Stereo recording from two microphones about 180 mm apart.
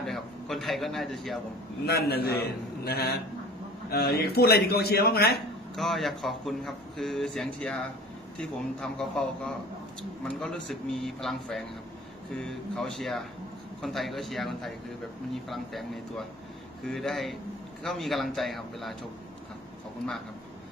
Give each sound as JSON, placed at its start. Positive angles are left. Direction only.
{"t": 0.0, "sound": "a man's voice", "side_deg": 0}
{"t": 1.9, "sound": "a man's voice", "side_deg": 60}
{"t": 5.8, "sound": "a man's voice", "side_deg": 0}